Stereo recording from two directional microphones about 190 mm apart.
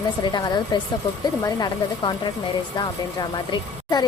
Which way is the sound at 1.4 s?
20° left (ahead or behind).